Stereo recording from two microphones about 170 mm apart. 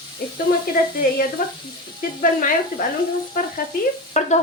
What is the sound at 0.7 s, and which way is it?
Speech, 55° left (ahead or behind).